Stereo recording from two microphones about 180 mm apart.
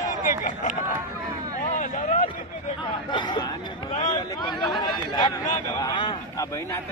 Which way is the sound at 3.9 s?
45° left (ahead or behind).